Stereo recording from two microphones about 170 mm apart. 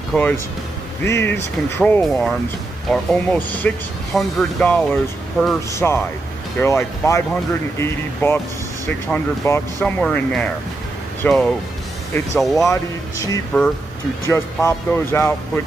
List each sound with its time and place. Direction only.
0.1 s speech: 10° left (ahead or behind)
5.7 s speech: 15° left (ahead or behind)
14.3 s speech: 15° left (ahead or behind)